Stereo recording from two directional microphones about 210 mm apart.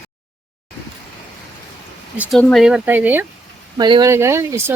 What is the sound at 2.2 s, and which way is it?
Speech, centre (ahead or behind).